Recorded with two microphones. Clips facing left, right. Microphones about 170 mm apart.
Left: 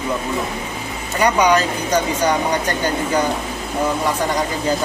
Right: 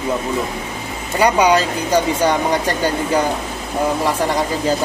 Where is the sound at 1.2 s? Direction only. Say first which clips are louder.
Right 1 dB; 30° right (ahead or behind).